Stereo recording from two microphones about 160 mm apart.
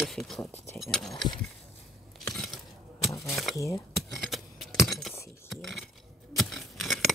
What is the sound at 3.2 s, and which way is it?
Speech, centre (ahead or behind).